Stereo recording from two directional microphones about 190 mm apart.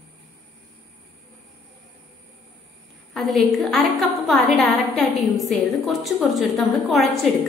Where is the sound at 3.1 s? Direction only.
Centre (ahead or behind).